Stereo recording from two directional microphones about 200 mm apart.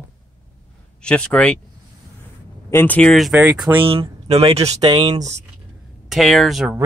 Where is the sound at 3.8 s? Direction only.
30° right (ahead or behind).